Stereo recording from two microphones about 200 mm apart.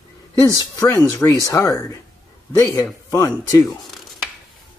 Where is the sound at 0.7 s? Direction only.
15° left (ahead or behind).